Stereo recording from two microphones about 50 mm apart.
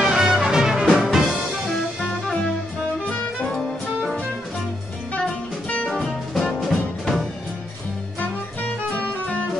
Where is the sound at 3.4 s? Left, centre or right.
Centre.